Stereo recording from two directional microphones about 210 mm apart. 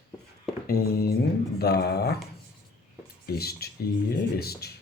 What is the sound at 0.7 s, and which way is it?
Speech, 45° left (ahead or behind).